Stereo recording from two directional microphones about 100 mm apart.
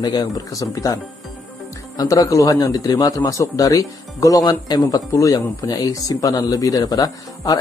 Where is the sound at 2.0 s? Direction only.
35° left (ahead or behind).